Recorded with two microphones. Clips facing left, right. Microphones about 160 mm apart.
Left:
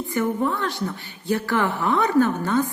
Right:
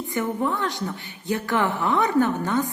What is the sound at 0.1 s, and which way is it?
A woman's voice, 20° right (ahead or behind).